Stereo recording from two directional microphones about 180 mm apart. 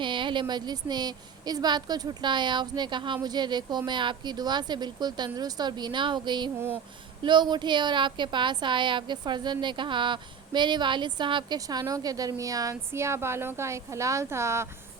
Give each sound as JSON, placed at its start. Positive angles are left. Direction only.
{"t": 0.0, "sound": "a woman's voice", "side_deg": -25}